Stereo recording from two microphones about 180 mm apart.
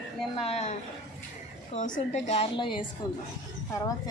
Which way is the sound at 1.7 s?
45° left (ahead or behind).